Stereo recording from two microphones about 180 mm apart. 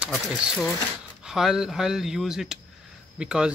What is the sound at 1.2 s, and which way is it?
Speech, centre (ahead or behind).